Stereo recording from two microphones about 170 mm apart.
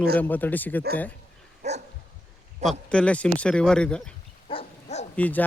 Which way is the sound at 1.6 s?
40° right (ahead or behind).